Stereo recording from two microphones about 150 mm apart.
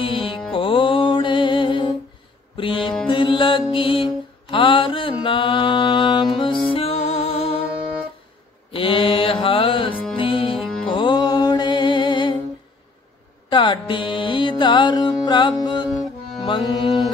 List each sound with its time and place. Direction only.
0.0 s music: 35° left (ahead or behind)
3.7 s mantra: 35° left (ahead or behind)
8.7 s music: 35° left (ahead or behind)
13.5 s music: 35° left (ahead or behind)